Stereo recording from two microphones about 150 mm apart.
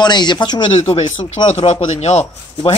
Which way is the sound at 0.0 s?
30° left (ahead or behind).